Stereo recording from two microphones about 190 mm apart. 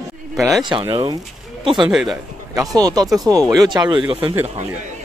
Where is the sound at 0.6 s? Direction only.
25° right (ahead or behind).